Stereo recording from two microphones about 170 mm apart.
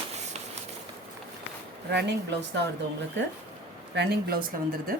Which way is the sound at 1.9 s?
85° right.